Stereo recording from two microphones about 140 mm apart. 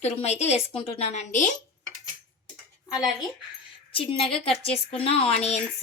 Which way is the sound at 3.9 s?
40° left (ahead or behind).